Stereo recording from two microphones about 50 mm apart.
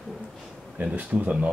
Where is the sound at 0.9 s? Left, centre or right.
Right.